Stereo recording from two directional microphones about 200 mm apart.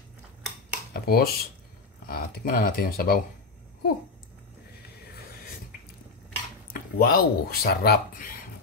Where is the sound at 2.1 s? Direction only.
45° left (ahead or behind).